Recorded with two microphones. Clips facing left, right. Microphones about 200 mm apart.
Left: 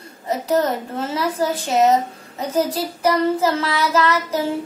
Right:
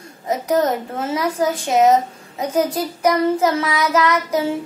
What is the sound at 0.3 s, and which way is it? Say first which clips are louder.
A woman's voice: right 1 dB; 10° right (ahead or behind).